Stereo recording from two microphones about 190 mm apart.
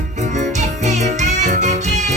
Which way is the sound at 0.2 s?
40° right (ahead or behind).